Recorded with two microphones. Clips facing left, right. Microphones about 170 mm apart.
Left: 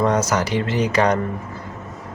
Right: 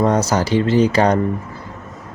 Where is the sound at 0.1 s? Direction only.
30° right (ahead or behind).